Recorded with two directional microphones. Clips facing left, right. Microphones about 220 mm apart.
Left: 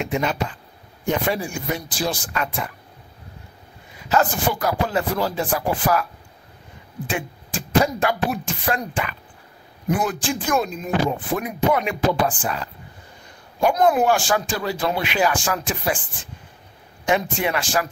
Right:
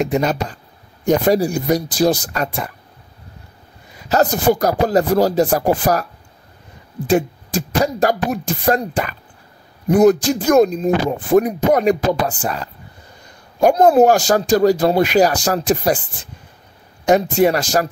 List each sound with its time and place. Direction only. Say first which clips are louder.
0.0 s speech: right 5 dB; 40° right (ahead or behind)
4.1 s speech: right 6 dB; 40° right (ahead or behind)
7.1 s speech: right 12 dB; 40° right (ahead or behind)
17.0 s speech: right 8 dB; 40° right (ahead or behind)